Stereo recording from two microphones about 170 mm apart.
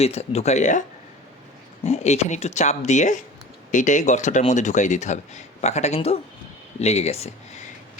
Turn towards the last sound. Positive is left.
turn(degrees=40)  # may be behind; listen again after turning